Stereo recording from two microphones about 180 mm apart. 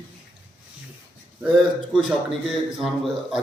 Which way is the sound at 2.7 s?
Centre (ahead or behind).